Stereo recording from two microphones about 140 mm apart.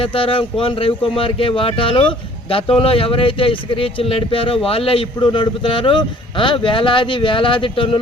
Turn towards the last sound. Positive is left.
turn(degrees=35)  # may be behind; listen again after turning